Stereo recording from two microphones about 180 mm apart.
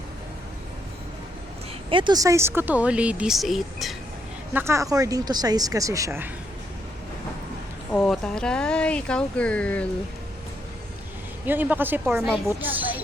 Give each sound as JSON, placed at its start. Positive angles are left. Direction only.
{"t": 1.9, "sound": "speech", "side_deg": -25}
{"t": 4.5, "sound": "speech", "side_deg": -15}
{"t": 7.9, "sound": "speech", "side_deg": 5}
{"t": 11.4, "sound": "speech", "side_deg": -10}